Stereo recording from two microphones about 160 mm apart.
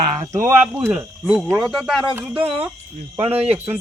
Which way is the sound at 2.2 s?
10° right (ahead or behind).